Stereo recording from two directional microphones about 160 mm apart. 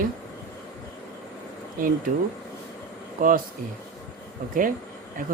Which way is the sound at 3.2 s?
60° right (ahead or behind).